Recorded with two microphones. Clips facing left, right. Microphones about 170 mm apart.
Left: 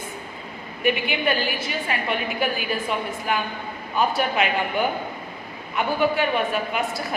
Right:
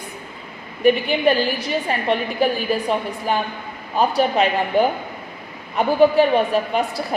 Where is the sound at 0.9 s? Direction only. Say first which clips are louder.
Right 7 dB; 35° right (ahead or behind).